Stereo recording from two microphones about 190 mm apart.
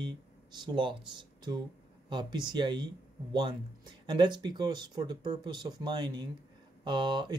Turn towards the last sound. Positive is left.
turn(degrees=-25)  # may be behind; listen again after turning